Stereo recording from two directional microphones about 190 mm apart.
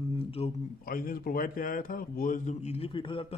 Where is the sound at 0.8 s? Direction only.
50° left (ahead or behind).